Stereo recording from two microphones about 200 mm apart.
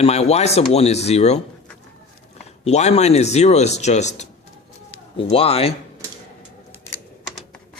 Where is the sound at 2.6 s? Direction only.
35° left (ahead or behind).